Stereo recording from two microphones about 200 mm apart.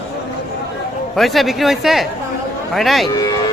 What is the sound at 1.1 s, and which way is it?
Speech, centre (ahead or behind).